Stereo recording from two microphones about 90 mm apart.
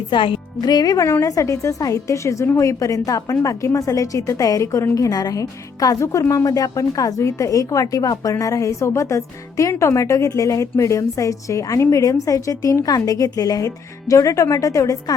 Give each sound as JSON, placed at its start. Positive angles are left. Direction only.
{"t": 0.1, "sound": "speech", "side_deg": 75}
{"t": 0.6, "sound": "a woman's voice", "side_deg": 45}